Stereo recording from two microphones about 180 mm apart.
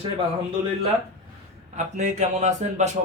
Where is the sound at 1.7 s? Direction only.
40° right (ahead or behind).